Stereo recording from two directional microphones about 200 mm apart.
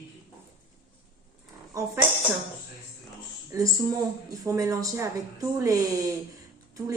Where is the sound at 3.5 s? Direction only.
15° right (ahead or behind).